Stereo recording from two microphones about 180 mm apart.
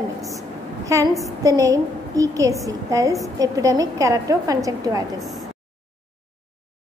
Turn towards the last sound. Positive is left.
turn(degrees=-20)  # may be behind; listen again after turning